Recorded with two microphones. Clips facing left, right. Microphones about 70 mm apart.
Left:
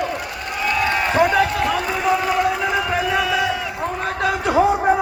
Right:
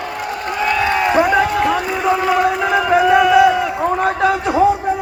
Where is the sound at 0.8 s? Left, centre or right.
Centre.